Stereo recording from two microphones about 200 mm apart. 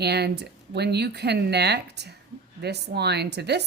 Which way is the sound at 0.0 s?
55° right (ahead or behind).